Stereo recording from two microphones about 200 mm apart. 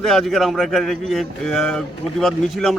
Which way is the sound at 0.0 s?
Centre (ahead or behind).